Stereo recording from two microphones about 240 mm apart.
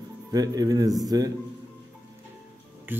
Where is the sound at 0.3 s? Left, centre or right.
Centre.